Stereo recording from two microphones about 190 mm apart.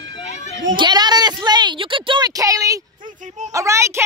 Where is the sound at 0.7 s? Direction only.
25° right (ahead or behind).